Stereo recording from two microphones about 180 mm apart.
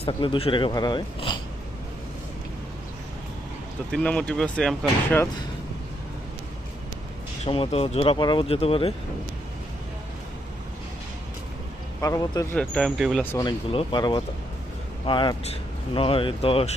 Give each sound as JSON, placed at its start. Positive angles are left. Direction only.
{"t": 0.0, "sound": "speech", "side_deg": 30}
{"t": 3.9, "sound": "speech", "side_deg": 5}
{"t": 7.4, "sound": "speech", "side_deg": 30}
{"t": 11.9, "sound": "speech", "side_deg": 20}
{"t": 12.5, "sound": "speech", "side_deg": 5}
{"t": 13.2, "sound": "speech", "side_deg": 15}
{"t": 13.7, "sound": "speech", "side_deg": 25}